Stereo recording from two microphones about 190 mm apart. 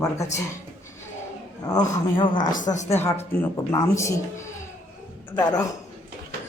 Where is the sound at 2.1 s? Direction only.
25° left (ahead or behind).